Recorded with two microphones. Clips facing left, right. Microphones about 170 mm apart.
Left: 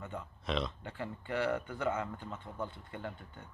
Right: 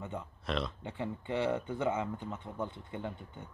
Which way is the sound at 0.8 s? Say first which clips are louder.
Right 3 dB; 20° right (ahead or behind).